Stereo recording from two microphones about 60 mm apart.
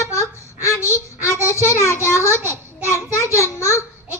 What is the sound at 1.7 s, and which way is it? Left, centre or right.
Speech, right.